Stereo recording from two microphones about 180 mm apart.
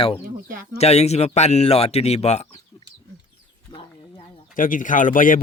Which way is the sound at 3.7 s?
25° left (ahead or behind).